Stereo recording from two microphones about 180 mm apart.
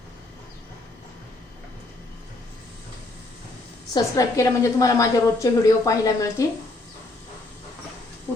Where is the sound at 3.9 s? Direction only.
15° left (ahead or behind).